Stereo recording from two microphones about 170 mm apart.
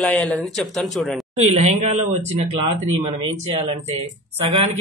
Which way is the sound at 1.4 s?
40° right (ahead or behind).